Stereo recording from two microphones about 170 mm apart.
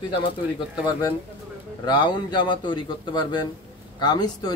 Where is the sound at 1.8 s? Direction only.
25° left (ahead or behind).